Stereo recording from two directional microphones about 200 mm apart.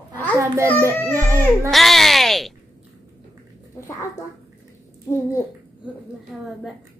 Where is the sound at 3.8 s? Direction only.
15° left (ahead or behind).